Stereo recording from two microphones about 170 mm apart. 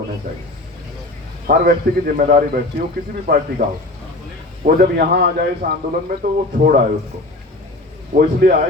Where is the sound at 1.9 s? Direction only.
70° right (ahead or behind).